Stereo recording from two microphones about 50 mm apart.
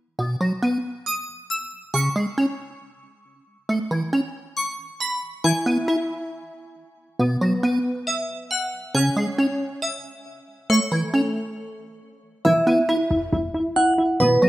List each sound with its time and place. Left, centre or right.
0.1 s music: centre
3.6 s music: centre
7.2 s music: centre
9.5 s music: centre
10.7 s music: centre
12.4 s music: centre